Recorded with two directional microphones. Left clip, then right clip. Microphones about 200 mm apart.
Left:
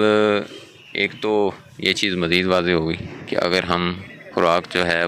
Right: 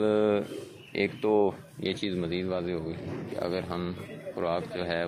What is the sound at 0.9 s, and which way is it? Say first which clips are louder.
Speech: left 6 dB; centre (ahead or behind).